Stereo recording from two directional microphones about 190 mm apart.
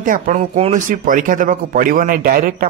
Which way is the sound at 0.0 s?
45° right (ahead or behind).